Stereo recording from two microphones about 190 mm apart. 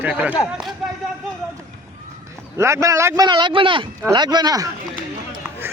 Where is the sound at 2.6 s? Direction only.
15° right (ahead or behind).